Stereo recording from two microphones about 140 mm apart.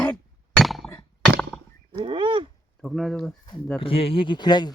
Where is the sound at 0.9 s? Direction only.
10° left (ahead or behind).